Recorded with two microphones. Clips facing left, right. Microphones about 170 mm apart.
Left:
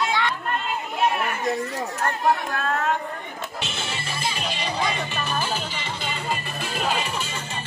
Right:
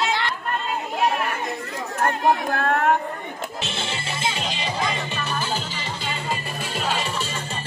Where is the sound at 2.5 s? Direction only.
55° right (ahead or behind).